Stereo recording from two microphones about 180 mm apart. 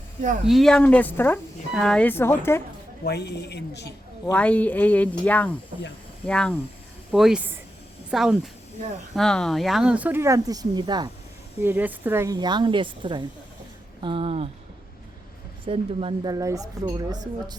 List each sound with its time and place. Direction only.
0.4 s speech: centre (ahead or behind)
3.0 s a woman's voice: 65° left (ahead or behind)
4.3 s speech: 10° left (ahead or behind); by 11.1 s 25° right (ahead or behind)
11.6 s speech: 10° right (ahead or behind); by 14.5 s 35° right (ahead or behind)
15.6 s speech: 30° right (ahead or behind)